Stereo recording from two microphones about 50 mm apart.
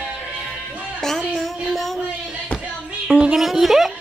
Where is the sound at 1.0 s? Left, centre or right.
Centre.